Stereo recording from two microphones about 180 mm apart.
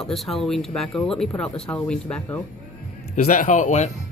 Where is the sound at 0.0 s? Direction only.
Centre (ahead or behind).